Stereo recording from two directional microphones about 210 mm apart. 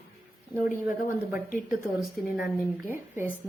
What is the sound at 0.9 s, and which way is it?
Speech, 40° left (ahead or behind).